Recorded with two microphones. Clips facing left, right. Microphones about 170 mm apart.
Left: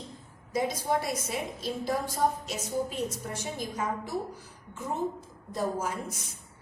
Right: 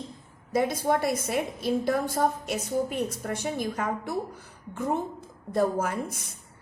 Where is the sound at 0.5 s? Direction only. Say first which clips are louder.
Right 4 dB; 60° right (ahead or behind).